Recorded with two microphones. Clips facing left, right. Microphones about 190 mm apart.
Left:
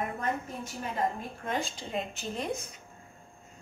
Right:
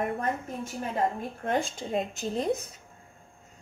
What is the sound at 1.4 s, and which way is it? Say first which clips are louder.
Speech: right 5 dB; 50° right (ahead or behind).